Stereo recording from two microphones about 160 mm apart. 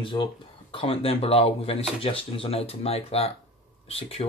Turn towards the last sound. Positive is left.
turn(degrees=35)  # may be behind; listen again after turning